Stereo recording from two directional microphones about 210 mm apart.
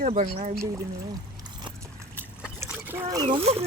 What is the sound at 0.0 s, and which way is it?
Speech, 30° right (ahead or behind).